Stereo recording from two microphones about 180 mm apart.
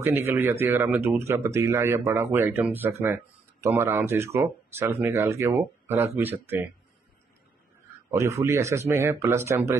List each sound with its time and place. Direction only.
0.0 s speech: 15° right (ahead or behind)
8.1 s speech: 15° right (ahead or behind)